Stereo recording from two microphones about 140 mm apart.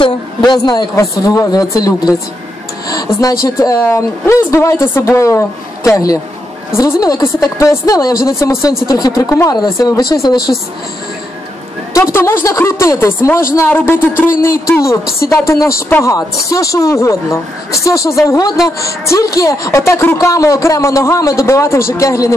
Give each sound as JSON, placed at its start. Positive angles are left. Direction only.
{"t": 0.0, "sound": "a man's voice", "side_deg": 30}
{"t": 11.9, "sound": "a man's voice", "side_deg": 20}